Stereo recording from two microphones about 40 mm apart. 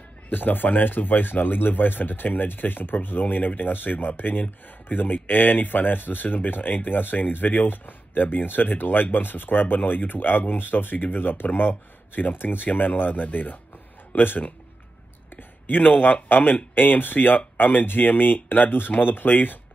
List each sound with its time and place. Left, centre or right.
0.3 s speech: left
15.6 s speech: left